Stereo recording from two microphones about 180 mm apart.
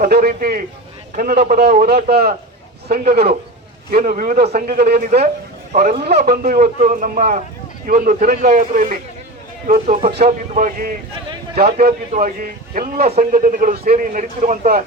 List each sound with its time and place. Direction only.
0.0 s a man's voice: 55° right (ahead or behind)
1.7 s a man's voice: 50° right (ahead or behind)
3.9 s a man's voice: 50° right (ahead or behind)
10.1 s a man's voice: 65° right (ahead or behind)
10.5 s a man's voice: 45° right (ahead or behind)
11.5 s a man's voice: 60° right (ahead or behind)
12.1 s a man's voice: 45° right (ahead or behind)
13.1 s speech: 35° right (ahead or behind)
13.4 s a man's voice: 50° right (ahead or behind)